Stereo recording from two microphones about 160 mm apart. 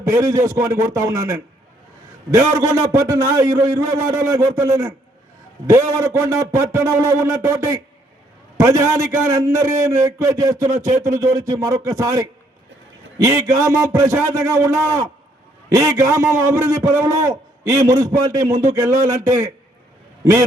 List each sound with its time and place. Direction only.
0.0 s a man's voice: 20° right (ahead or behind)